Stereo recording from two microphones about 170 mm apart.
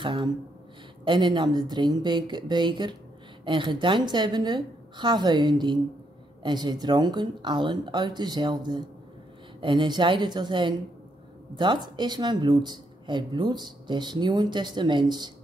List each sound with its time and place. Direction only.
0.0 s speech: 30° right (ahead or behind)